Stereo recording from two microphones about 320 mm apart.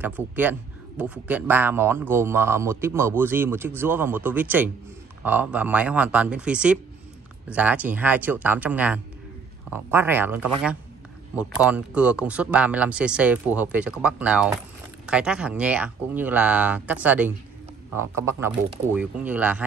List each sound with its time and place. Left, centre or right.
0.0 s a man's voice: centre